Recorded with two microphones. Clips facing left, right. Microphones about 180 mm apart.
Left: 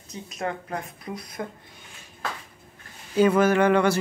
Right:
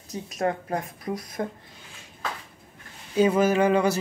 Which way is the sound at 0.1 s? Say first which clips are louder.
Right 4 dB; 40° right (ahead or behind).